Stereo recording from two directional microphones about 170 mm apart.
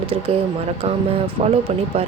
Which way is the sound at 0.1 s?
35° right (ahead or behind).